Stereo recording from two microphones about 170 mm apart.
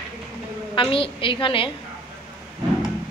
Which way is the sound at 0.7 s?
30° left (ahead or behind).